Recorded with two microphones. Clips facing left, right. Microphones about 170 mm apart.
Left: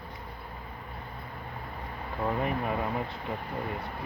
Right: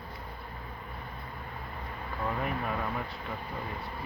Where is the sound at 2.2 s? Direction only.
25° left (ahead or behind).